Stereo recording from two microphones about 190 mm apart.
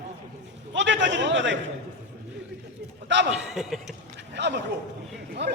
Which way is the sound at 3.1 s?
70° right (ahead or behind).